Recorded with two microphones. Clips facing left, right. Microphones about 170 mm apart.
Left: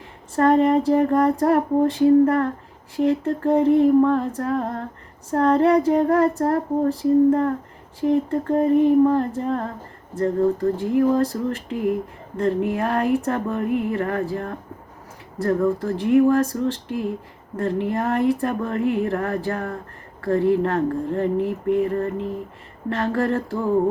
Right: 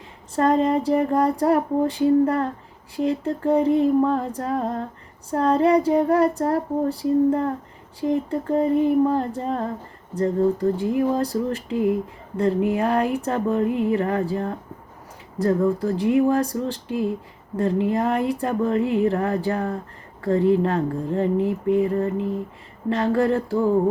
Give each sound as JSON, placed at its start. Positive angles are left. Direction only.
{"t": 0.3, "sound": "female singing", "side_deg": -15}
{"t": 13.9, "sound": "a sound", "side_deg": -20}
{"t": 15.4, "sound": "female singing", "side_deg": -15}